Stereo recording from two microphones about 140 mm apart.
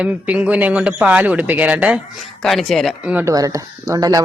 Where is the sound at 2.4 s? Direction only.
Centre (ahead or behind).